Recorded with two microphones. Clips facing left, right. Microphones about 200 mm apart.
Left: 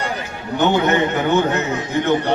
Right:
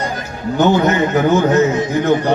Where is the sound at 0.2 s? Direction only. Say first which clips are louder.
Right 5 dB; 40° right (ahead or behind).